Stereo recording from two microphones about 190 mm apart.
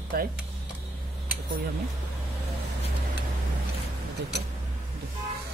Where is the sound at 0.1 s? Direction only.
50° right (ahead or behind).